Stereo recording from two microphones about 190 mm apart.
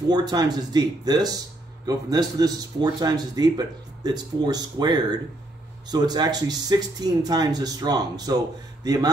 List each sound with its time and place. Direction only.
0.1 s speech: 20° right (ahead or behind)